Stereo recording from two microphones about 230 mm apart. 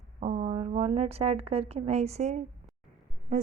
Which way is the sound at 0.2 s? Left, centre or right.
Right.